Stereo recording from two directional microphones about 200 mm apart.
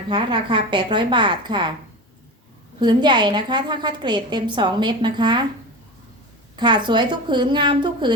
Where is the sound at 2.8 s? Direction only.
20° right (ahead or behind).